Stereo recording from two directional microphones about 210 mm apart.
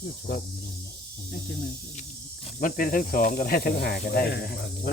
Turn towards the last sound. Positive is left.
turn(degrees=50)  # may be behind; listen again after turning